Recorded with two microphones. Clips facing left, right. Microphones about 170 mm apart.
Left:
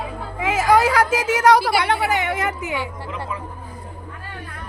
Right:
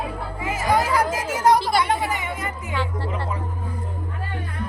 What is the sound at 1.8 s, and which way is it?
Chatter, 75° left (ahead or behind).